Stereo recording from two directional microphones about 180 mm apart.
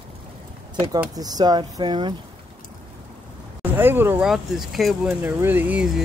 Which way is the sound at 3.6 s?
10° right (ahead or behind).